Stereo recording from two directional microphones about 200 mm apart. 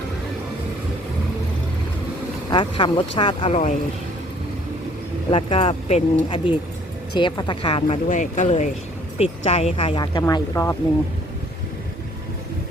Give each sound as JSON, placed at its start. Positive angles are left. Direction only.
{"t": 2.5, "sound": "speech", "side_deg": 25}
{"t": 5.3, "sound": "speech", "side_deg": 25}